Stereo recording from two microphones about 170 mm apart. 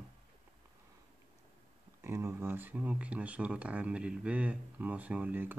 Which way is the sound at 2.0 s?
15° right (ahead or behind).